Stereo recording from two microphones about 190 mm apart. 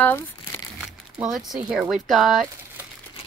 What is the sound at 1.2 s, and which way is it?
Speech, centre (ahead or behind).